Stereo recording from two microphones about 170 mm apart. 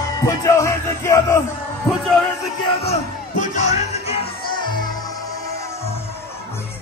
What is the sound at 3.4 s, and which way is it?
Music, 45° left (ahead or behind).